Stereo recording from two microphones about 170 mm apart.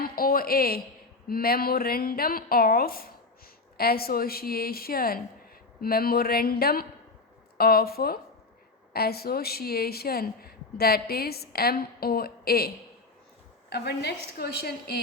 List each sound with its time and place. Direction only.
0.0 s a woman's voice: 60° left (ahead or behind)
13.7 s a woman's voice: 75° left (ahead or behind)